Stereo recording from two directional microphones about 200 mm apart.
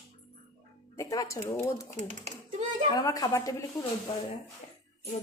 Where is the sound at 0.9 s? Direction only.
15° left (ahead or behind).